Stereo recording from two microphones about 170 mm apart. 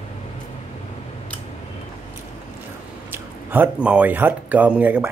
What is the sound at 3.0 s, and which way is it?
Speech, 10° right (ahead or behind).